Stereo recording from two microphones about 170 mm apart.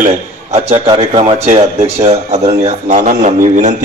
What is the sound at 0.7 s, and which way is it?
A man's voice, 30° right (ahead or behind).